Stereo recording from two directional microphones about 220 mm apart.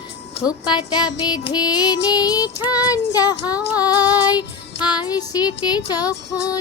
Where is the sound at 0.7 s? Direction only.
20° left (ahead or behind).